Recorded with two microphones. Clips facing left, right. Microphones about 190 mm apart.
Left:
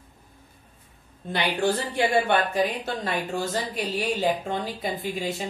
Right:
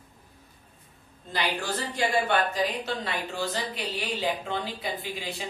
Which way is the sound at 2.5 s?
45° left (ahead or behind).